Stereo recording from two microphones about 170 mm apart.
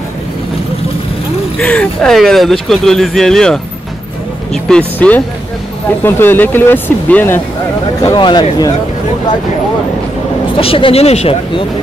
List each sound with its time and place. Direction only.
1.6 s speech: 5° left (ahead or behind)
4.6 s speech: 5° left (ahead or behind)
8.0 s speech: 25° left (ahead or behind)
10.5 s speech: 30° left (ahead or behind)